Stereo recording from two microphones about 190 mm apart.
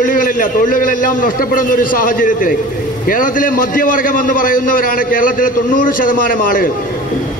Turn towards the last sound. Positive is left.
turn(degrees=45)  # may be behind; listen again after turning